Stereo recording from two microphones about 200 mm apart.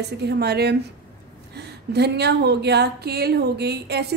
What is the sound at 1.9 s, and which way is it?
A woman's voice, 55° right (ahead or behind).